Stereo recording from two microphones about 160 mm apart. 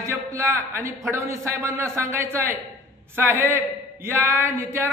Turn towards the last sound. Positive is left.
turn(degrees=-15)  # may be behind; listen again after turning